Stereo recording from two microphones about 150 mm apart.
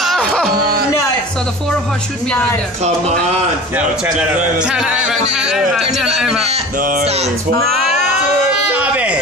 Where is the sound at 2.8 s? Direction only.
45° right (ahead or behind).